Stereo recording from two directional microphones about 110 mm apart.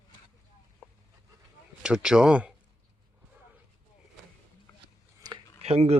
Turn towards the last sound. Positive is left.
turn(degrees=-70)  # may be behind; listen again after turning